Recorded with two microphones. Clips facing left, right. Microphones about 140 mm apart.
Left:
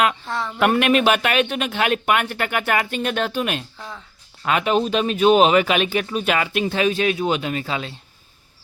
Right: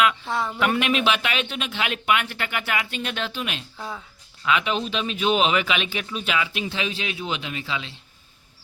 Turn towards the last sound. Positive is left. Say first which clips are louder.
# left 6 dB
turn(degrees=45)  # may be behind; listen again after turning